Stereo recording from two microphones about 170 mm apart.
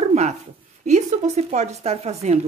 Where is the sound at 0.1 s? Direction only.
40° right (ahead or behind).